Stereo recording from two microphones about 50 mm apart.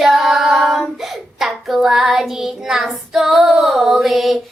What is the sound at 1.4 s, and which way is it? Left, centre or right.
Child singing, centre.